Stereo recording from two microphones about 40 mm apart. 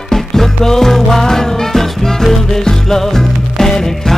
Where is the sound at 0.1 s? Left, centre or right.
Centre.